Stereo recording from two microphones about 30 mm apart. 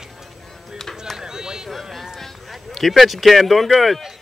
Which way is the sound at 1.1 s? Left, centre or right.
Right.